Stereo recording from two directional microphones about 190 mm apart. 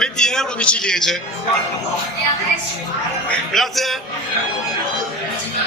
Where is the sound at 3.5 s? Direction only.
Centre (ahead or behind).